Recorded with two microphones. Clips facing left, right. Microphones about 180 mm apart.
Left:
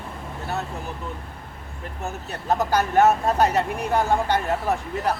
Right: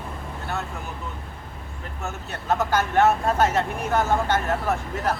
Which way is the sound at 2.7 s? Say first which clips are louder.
Left 2 dB; 40° left (ahead or behind).